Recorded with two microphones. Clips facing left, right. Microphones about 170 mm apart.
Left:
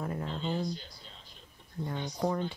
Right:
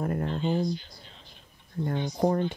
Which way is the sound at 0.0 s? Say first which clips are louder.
Right 6 dB; 50° right (ahead or behind).